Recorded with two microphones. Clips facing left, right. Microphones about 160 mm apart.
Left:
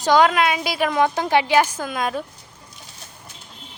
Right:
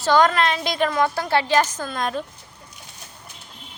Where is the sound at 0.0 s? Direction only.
10° left (ahead or behind).